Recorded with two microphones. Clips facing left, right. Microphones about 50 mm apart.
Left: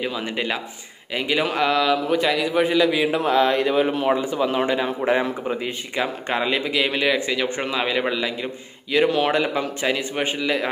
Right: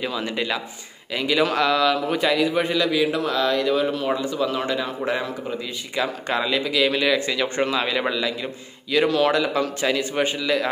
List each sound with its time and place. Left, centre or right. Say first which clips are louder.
0.0 s a man's voice: even; centre